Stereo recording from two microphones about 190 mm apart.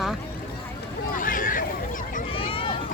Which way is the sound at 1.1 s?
45° left (ahead or behind).